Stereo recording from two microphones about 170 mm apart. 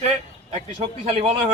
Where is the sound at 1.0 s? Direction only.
35° right (ahead or behind).